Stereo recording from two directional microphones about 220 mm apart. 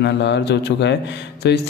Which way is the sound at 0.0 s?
50° left (ahead or behind).